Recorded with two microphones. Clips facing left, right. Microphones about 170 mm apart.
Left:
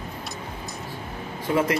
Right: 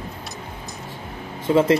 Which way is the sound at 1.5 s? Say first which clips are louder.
Right 5 dB; 20° right (ahead or behind).